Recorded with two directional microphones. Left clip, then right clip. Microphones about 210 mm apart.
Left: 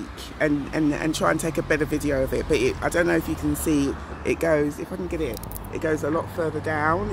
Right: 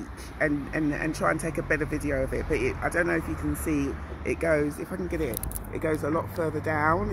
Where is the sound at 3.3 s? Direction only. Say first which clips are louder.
Left 5 dB; 40° left (ahead or behind).